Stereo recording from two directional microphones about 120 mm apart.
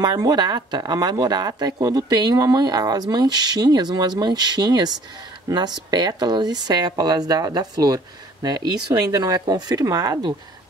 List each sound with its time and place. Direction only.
0.0 s speech: 35° right (ahead or behind)